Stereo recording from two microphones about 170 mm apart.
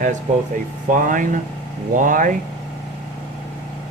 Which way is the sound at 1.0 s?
50° right (ahead or behind).